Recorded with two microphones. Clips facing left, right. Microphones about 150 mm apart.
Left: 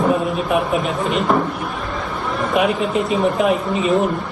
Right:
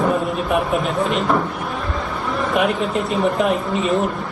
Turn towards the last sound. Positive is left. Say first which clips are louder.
# left 2 dB
turn(degrees=0)  # may be behind; listen again after turning